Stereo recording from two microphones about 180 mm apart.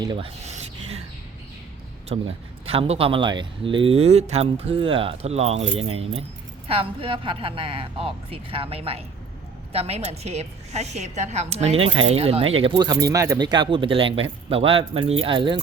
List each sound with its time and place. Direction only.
0.0 s speech: 25° right (ahead or behind)
0.4 s a sound: 35° right (ahead or behind)
2.0 s speech: 35° right (ahead or behind)